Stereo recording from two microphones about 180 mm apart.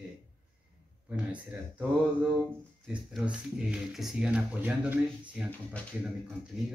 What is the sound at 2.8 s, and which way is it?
Speech, 5° right (ahead or behind).